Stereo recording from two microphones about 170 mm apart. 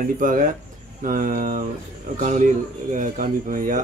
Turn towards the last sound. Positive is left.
turn(degrees=-50)  # may be behind; listen again after turning